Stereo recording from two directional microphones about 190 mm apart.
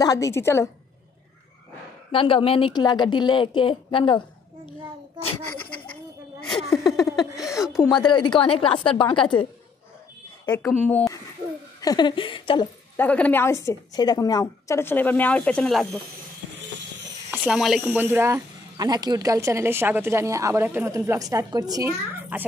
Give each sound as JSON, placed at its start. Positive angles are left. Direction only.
{"t": 0.0, "sound": "a woman's voice", "side_deg": 20}
{"t": 2.1, "sound": "a woman's voice", "side_deg": 30}
{"t": 6.7, "sound": "a sound", "side_deg": 0}
{"t": 7.2, "sound": "chuckle", "side_deg": 0}
{"t": 7.8, "sound": "a woman's voice", "side_deg": 10}
{"t": 8.1, "sound": "a woman's voice", "side_deg": 25}
{"t": 10.5, "sound": "a woman's voice", "side_deg": 10}
{"t": 11.8, "sound": "a woman's voice", "side_deg": 20}
{"t": 12.9, "sound": "a woman's voice", "side_deg": 10}
{"t": 17.3, "sound": "speech", "side_deg": -5}